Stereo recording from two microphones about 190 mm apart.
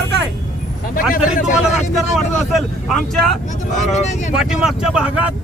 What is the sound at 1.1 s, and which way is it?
Speech, 45° left (ahead or behind).